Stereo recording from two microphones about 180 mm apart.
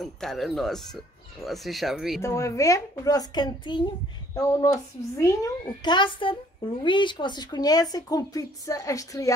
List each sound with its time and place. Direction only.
0.0 s speech: centre (ahead or behind)
2.2 s a child's voice: 15° left (ahead or behind)